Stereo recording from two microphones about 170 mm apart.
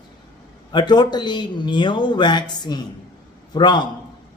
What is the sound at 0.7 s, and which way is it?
Speech, 25° left (ahead or behind).